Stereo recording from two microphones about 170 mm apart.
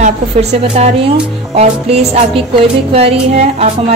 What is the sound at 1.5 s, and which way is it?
Music, 40° right (ahead or behind).